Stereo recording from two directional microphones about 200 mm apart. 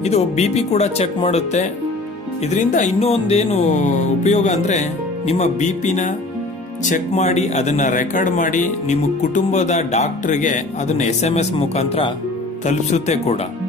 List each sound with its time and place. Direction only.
0.0 s a man's voice: 35° left (ahead or behind)